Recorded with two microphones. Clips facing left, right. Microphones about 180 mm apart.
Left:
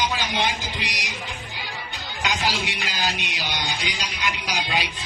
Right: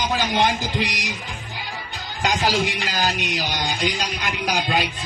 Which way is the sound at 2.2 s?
45° right (ahead or behind).